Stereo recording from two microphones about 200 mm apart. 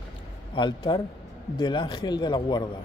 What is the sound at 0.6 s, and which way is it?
Speech, 25° left (ahead or behind).